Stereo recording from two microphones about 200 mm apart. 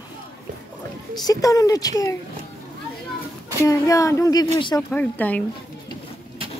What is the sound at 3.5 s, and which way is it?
Speech, 15° left (ahead or behind).